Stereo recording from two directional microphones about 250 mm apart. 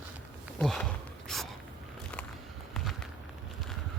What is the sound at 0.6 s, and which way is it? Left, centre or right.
Speech, centre.